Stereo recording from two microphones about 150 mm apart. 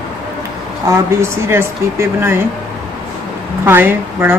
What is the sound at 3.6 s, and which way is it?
Speech, 15° right (ahead or behind).